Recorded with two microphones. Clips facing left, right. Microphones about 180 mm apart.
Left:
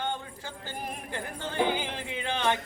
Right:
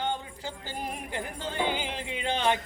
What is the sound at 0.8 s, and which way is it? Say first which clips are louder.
Music: right 2 dB; 15° right (ahead or behind).